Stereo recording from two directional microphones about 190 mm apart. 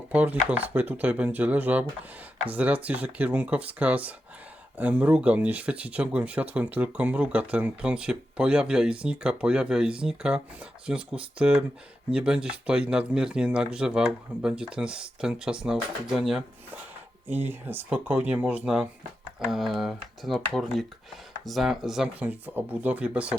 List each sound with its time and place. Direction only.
0.1 s speech: 10° right (ahead or behind)